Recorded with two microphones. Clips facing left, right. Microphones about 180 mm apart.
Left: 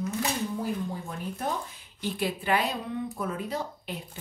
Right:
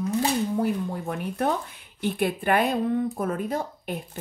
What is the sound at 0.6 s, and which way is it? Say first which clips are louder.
Speech: right 5 dB; 65° right (ahead or behind).